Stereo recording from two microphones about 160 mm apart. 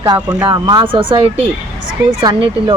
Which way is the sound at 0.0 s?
25° right (ahead or behind).